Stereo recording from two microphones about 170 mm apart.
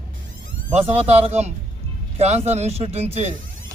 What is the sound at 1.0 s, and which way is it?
Speech, 40° right (ahead or behind).